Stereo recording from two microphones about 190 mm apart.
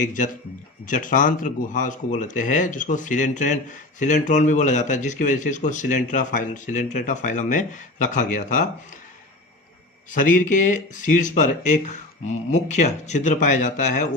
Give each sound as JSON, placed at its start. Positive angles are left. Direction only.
{"t": 0.9, "sound": "speech", "side_deg": 45}
{"t": 10.1, "sound": "speech", "side_deg": 45}